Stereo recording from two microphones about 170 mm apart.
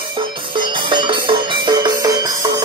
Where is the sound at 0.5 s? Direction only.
30° right (ahead or behind).